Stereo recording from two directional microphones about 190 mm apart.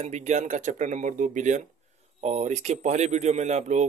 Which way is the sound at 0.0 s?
35° right (ahead or behind).